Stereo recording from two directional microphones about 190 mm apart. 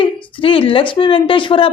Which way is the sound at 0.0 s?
25° left (ahead or behind).